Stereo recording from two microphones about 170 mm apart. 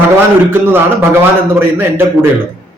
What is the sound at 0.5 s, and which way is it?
A man's voice, 15° right (ahead or behind).